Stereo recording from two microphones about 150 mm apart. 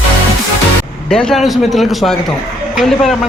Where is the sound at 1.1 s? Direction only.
5° left (ahead or behind).